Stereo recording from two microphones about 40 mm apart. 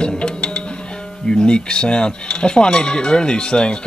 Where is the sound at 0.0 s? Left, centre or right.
Left.